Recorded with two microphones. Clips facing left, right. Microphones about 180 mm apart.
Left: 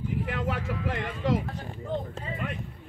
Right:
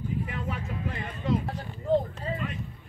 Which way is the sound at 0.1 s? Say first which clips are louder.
Left 4 dB; 80° left.